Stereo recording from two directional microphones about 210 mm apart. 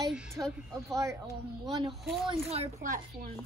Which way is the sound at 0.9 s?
15° right (ahead or behind).